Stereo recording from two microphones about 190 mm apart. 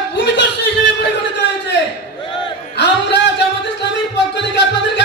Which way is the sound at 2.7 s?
65° left (ahead or behind).